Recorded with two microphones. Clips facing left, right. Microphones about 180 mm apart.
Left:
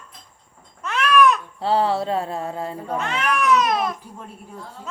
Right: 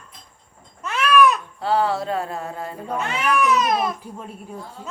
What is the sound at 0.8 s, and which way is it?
Babbling, 5° right (ahead or behind).